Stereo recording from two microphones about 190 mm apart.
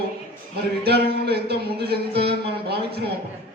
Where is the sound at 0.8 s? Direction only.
55° right (ahead or behind).